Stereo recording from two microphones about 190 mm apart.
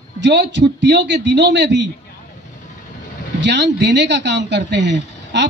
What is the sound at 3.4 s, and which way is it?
A man's voice, 65° right (ahead or behind).